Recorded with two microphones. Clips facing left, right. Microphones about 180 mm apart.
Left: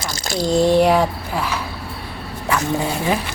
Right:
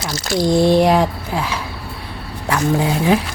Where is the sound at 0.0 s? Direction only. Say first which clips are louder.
Right 4 dB; 10° right (ahead or behind).